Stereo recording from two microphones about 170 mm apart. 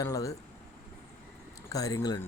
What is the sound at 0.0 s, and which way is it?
Speech, 20° left (ahead or behind).